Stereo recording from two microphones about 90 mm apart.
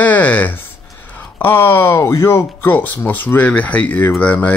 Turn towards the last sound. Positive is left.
turn(degrees=20)  # may be behind; listen again after turning